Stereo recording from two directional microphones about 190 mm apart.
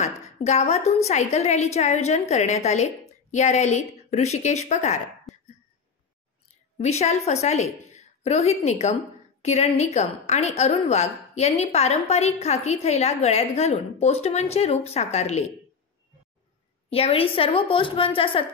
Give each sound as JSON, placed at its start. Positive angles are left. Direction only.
{"t": 0.0, "sound": "a woman's voice", "side_deg": 35}
{"t": 6.8, "sound": "a woman's voice", "side_deg": 35}
{"t": 16.9, "sound": "a woman's voice", "side_deg": 30}